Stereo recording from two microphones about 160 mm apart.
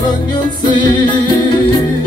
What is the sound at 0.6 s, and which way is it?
Music, 30° left (ahead or behind).